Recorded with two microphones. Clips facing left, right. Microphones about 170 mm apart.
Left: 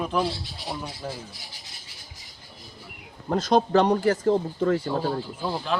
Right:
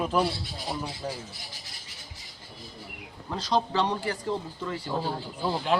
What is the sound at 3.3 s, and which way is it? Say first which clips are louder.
Speech: left 6 dB; 50° left (ahead or behind).